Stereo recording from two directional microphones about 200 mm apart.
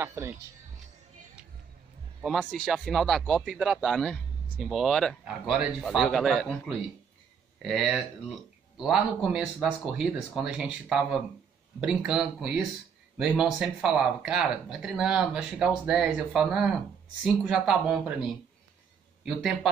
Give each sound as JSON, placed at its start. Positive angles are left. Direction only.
{"t": 0.0, "sound": "speech", "side_deg": -15}
{"t": 2.2, "sound": "speech", "side_deg": 0}
{"t": 7.6, "sound": "speech", "side_deg": 0}
{"t": 19.2, "sound": "speech", "side_deg": -5}